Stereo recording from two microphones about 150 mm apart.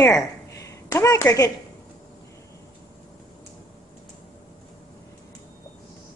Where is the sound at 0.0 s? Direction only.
20° left (ahead or behind).